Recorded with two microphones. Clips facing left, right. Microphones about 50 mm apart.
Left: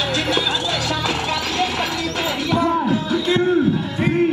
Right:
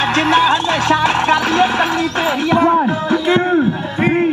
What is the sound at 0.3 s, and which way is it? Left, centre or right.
Speech, right.